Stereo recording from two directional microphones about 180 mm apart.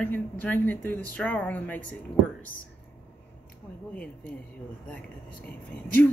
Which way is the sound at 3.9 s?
5° left (ahead or behind).